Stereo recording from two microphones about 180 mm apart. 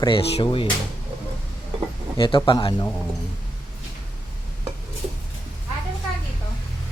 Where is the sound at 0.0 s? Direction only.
30° left (ahead or behind).